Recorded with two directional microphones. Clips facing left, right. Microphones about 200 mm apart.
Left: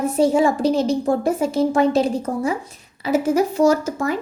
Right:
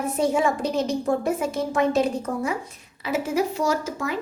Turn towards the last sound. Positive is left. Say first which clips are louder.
# left 8 dB
turn(degrees=45)  # may be behind; listen again after turning